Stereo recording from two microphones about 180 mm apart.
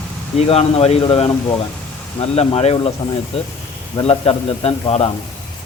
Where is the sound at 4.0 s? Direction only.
35° left (ahead or behind).